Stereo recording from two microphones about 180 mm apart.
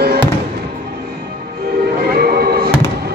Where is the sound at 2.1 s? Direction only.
60° right (ahead or behind).